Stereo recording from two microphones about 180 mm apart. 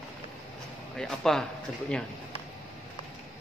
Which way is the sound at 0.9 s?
Centre (ahead or behind).